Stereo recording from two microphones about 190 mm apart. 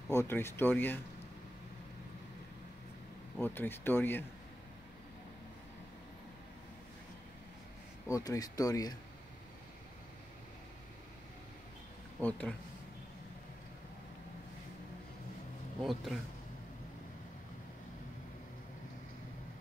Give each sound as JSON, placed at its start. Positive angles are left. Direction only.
{"t": 0.1, "sound": "speech", "side_deg": 15}
{"t": 3.3, "sound": "speech", "side_deg": 10}
{"t": 8.1, "sound": "speech", "side_deg": 20}
{"t": 12.2, "sound": "speech", "side_deg": 5}
{"t": 15.8, "sound": "speech", "side_deg": 0}